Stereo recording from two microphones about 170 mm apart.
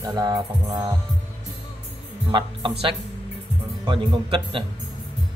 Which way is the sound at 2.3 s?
25° right (ahead or behind).